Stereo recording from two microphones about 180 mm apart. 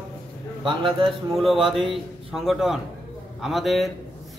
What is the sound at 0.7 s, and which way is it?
Speech, 25° right (ahead or behind).